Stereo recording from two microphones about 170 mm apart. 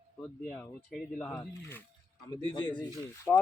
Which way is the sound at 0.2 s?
5° left (ahead or behind).